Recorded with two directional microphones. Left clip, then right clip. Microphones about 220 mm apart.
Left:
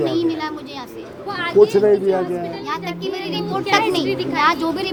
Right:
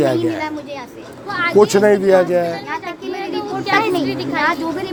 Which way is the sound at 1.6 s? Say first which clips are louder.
Even; 55° right (ahead or behind).